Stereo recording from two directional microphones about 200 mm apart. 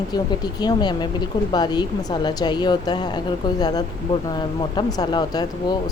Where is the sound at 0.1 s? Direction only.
20° left (ahead or behind).